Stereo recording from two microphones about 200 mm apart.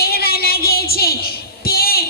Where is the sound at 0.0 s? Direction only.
50° left (ahead or behind).